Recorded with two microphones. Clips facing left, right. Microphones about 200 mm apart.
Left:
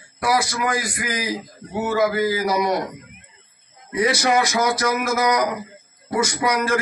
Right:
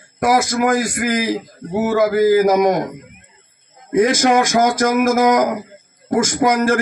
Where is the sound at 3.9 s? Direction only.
45° right (ahead or behind).